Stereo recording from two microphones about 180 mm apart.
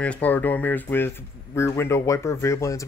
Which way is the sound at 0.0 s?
10° left (ahead or behind).